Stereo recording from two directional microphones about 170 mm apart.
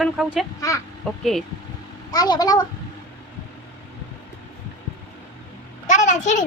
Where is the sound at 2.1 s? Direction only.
25° left (ahead or behind).